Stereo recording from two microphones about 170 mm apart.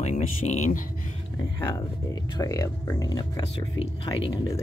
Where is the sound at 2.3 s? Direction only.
20° left (ahead or behind).